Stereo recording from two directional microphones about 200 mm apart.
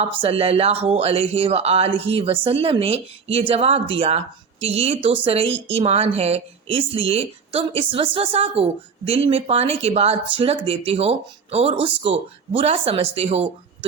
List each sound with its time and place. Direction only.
0.0 s speech: 30° right (ahead or behind)